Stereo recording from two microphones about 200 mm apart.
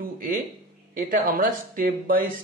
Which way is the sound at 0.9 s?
45° right (ahead or behind).